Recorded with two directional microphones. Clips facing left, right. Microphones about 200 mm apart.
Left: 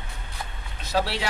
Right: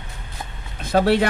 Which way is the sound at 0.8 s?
50° right (ahead or behind).